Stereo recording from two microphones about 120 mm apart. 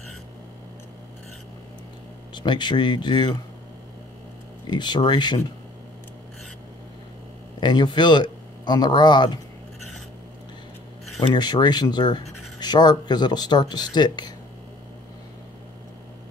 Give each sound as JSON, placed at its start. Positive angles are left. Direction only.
{"t": 2.3, "sound": "speech", "side_deg": 40}
{"t": 4.6, "sound": "speech", "side_deg": 40}
{"t": 7.6, "sound": "speech", "side_deg": 40}
{"t": 11.3, "sound": "speech", "side_deg": 35}